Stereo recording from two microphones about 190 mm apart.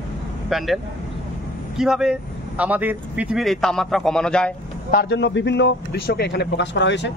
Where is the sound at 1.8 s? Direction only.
5° right (ahead or behind).